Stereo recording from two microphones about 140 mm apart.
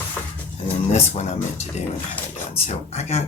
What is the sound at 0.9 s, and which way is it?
Speech, 50° left (ahead or behind).